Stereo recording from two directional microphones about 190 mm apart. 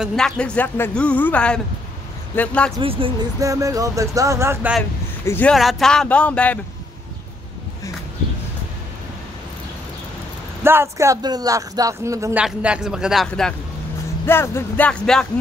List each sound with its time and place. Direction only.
0.0 s a woman's voice: 5° left (ahead or behind)
2.8 s speech: 25° right (ahead or behind)
3.4 s speech: 15° right (ahead or behind)
5.2 s speech: 10° left (ahead or behind)
5.5 s a woman's voice: centre (ahead or behind)
10.6 s speech: 15° right (ahead or behind)
12.4 s a woman's voice: 5° right (ahead or behind)
14.2 s speech: 10° left (ahead or behind)